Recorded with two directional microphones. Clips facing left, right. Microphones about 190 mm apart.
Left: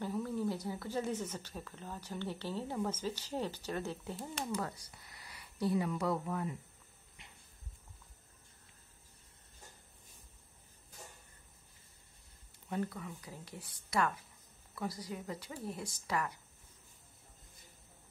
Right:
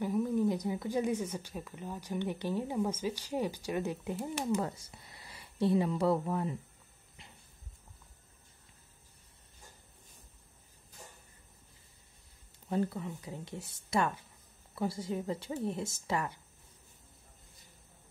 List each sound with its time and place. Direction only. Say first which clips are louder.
0.0 s speech: right 6 dB; 15° right (ahead or behind)
12.6 s speech: right 5 dB; 30° right (ahead or behind)